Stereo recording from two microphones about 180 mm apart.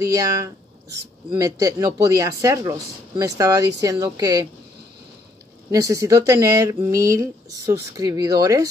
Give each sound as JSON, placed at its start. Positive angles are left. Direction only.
{"t": 0.0, "sound": "speech", "side_deg": -20}
{"t": 5.7, "sound": "speech", "side_deg": -20}